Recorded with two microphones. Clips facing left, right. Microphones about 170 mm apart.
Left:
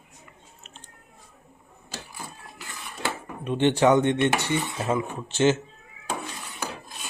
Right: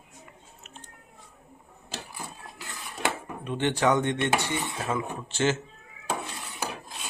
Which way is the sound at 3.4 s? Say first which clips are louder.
Left 5 dB; 20° left (ahead or behind).